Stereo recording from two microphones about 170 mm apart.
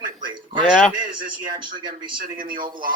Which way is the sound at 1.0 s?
55° right (ahead or behind).